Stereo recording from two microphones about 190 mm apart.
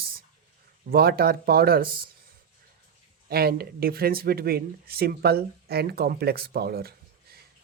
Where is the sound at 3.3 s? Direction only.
55° right (ahead or behind).